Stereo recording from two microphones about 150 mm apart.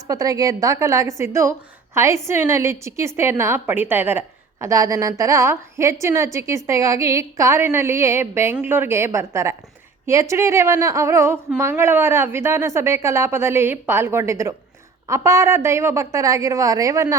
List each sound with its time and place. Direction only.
0.1 s a woman's voice: 25° right (ahead or behind)